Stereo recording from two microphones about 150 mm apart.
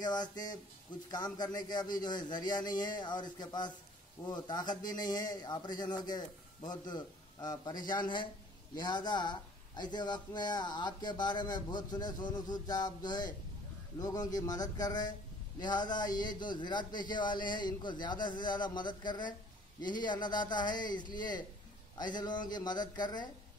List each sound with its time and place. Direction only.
0.0 s a man's voice: 25° left (ahead or behind)